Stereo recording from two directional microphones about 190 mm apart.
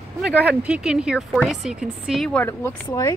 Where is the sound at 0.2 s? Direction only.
5° right (ahead or behind).